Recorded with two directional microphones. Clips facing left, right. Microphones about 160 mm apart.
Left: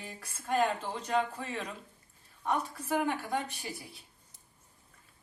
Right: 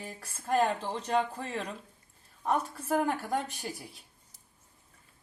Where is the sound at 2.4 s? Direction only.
40° right (ahead or behind).